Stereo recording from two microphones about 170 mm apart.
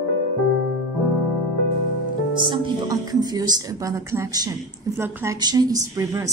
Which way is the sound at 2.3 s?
25° right (ahead or behind).